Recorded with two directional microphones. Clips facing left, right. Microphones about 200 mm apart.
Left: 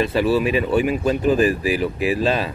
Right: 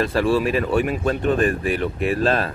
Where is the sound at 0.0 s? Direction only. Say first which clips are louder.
Left 1 dB; centre (ahead or behind).